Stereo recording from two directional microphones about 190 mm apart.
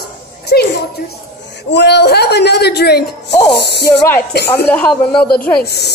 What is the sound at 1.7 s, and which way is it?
Speech, 65° left (ahead or behind).